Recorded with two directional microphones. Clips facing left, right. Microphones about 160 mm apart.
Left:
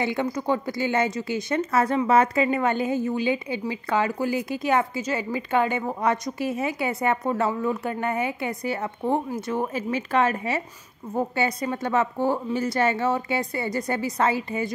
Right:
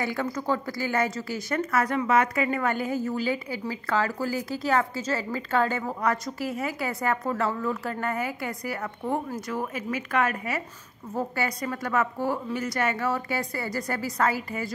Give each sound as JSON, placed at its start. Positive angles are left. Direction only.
{"t": 0.0, "sound": "a woman's voice", "side_deg": 20}